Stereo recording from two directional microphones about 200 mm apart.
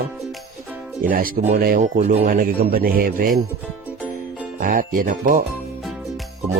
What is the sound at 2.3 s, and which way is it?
Speech, 45° right (ahead or behind).